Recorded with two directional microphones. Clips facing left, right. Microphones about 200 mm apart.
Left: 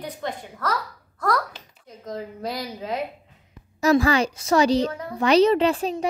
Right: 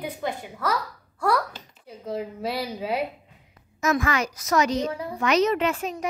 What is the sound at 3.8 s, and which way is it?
A woman's voice, 30° left (ahead or behind).